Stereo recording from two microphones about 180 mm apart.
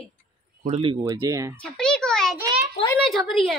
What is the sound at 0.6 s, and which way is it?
Speech, 35° right (ahead or behind).